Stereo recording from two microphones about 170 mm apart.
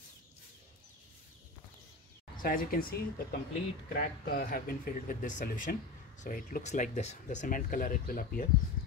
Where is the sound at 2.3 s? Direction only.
55° left (ahead or behind).